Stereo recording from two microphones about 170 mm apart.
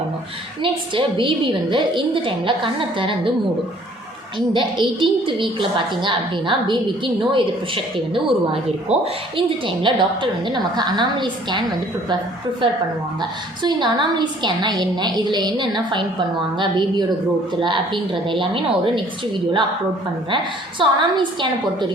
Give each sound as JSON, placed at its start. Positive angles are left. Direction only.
{"t": 0.6, "sound": "a woman's voice", "side_deg": -30}
{"t": 4.4, "sound": "a woman's voice", "side_deg": -30}
{"t": 8.9, "sound": "a woman's voice", "side_deg": -30}
{"t": 12.6, "sound": "a woman's voice", "side_deg": -30}